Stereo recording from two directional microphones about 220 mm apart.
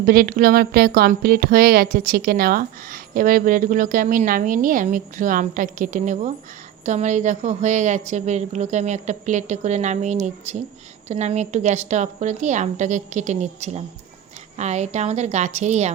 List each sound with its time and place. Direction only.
0.0 s speech: 40° right (ahead or behind)